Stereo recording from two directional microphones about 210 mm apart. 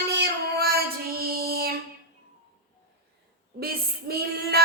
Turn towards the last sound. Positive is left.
turn(degrees=-50)  # may be behind; listen again after turning